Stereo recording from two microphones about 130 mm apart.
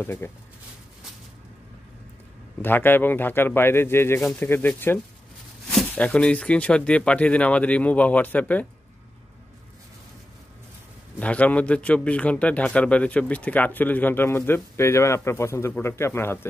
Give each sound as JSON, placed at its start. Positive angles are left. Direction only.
{"t": 0.0, "sound": "a man's voice", "side_deg": 20}
{"t": 2.6, "sound": "a man's voice", "side_deg": 15}
{"t": 11.1, "sound": "a man's voice", "side_deg": 10}